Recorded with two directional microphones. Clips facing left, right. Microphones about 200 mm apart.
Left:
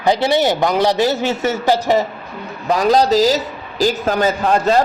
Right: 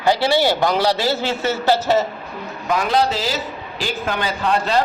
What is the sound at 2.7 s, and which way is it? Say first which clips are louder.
A man's voice: left 5 dB; 40° left (ahead or behind).